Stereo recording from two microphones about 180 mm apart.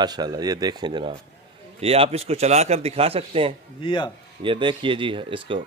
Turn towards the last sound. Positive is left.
turn(degrees=-30)  # may be behind; listen again after turning